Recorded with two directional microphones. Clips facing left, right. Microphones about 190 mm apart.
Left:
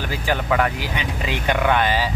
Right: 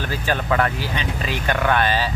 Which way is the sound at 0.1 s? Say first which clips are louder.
Left 1 dB; 15° left (ahead or behind).